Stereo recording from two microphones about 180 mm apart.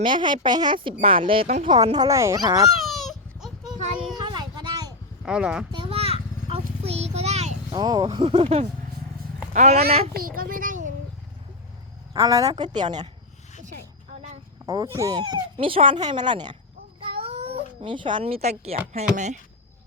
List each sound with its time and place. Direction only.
0.0 s speech: 25° right (ahead or behind)
1.7 s speech: 25° right (ahead or behind)
2.8 s a sound: centre (ahead or behind)
4.1 s a sound: 25° right (ahead or behind)
5.2 s speech: 5° right (ahead or behind)
5.7 s a sound: 30° right (ahead or behind)
7.7 s speech: 25° right (ahead or behind); by 9.8 s 40° right (ahead or behind)
10.2 s a child's voice: 55° right (ahead or behind)
12.1 s speech: 20° right (ahead or behind)
14.9 s speech: 20° right (ahead or behind)
17.0 s cat: 30° right (ahead or behind)
19.1 s speech: 40° right (ahead or behind)